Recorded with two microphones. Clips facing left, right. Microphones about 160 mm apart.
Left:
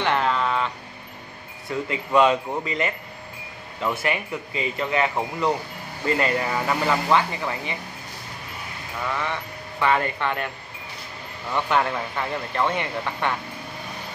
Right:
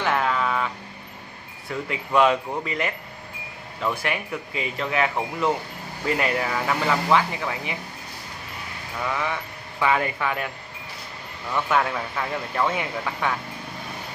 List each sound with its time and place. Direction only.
0.0 s a sound: 5° right (ahead or behind)
1.7 s speech: centre (ahead or behind)
4.0 s speech: centre (ahead or behind)
9.0 s speech: 5° right (ahead or behind)
11.5 s speech: centre (ahead or behind)